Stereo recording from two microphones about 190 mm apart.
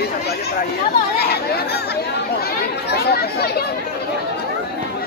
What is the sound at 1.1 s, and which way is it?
Chatter, 55° left (ahead or behind).